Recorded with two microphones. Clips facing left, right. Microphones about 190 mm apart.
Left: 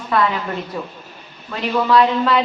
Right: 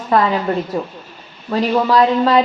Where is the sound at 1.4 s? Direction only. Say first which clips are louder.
Right 3 dB; 40° right (ahead or behind).